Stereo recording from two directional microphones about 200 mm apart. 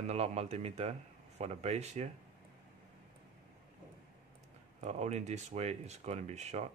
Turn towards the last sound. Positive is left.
turn(degrees=-35)  # may be behind; listen again after turning